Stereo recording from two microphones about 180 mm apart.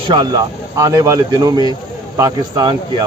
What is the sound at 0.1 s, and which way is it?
Speech, 25° right (ahead or behind).